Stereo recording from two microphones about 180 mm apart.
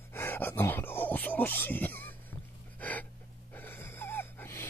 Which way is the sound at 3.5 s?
10° left (ahead or behind).